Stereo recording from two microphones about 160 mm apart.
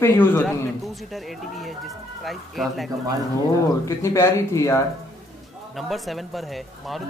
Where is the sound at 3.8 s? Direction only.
20° left (ahead or behind).